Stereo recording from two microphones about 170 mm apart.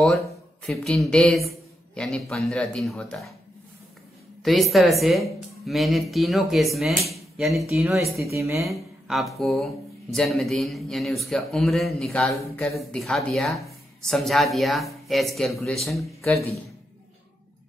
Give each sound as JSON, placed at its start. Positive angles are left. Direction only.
{"t": 0.7, "sound": "speech", "side_deg": 5}
{"t": 4.4, "sound": "speech", "side_deg": 0}
{"t": 8.2, "sound": "a woman's voice", "side_deg": -15}
{"t": 8.6, "sound": "speech", "side_deg": 0}